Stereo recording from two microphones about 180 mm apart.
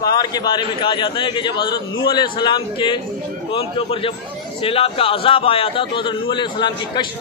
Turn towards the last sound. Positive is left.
turn(degrees=25)  # may be behind; listen again after turning